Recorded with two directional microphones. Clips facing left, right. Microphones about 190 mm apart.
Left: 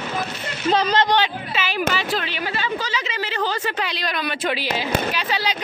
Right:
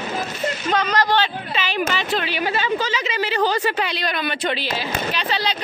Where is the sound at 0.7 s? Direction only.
30° left (ahead or behind).